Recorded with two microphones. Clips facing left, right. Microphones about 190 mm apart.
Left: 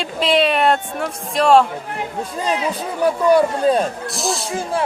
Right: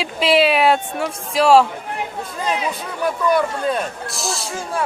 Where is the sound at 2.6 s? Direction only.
30° left (ahead or behind).